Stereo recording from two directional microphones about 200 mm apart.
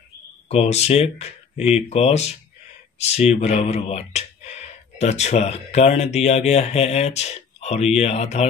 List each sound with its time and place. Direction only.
0.5 s speech: 30° left (ahead or behind)